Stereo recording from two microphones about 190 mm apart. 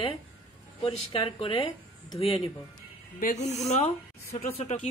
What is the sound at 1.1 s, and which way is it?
Speech, 30° left (ahead or behind).